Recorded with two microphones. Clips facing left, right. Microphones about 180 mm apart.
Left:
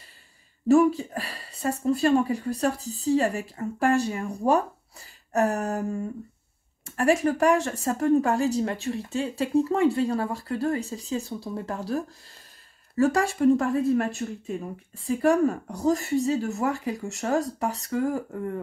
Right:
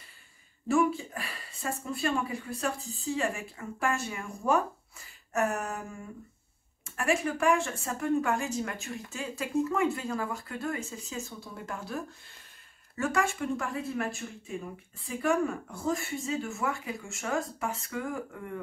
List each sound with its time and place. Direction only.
0.7 s speech: 40° left (ahead or behind)